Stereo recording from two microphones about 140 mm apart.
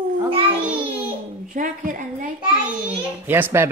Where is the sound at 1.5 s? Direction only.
75° right (ahead or behind).